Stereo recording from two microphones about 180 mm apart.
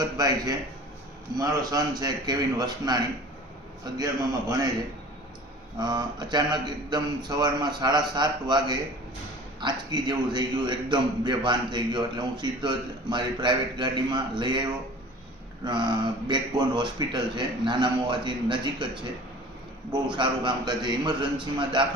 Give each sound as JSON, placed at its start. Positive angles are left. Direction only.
{"t": 0.0, "sound": "a man's voice", "side_deg": -20}
{"t": 5.8, "sound": "a man's voice", "side_deg": -25}
{"t": 19.9, "sound": "a man's voice", "side_deg": -25}